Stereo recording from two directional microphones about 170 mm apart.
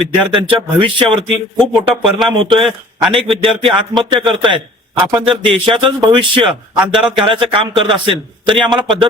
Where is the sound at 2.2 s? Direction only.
30° right (ahead or behind).